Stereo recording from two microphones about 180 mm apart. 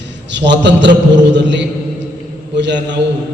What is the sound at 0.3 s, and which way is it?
A man's voice, 75° right (ahead or behind).